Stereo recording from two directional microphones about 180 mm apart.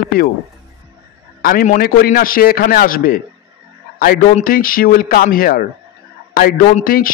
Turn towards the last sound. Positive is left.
turn(degrees=50)  # may be behind; listen again after turning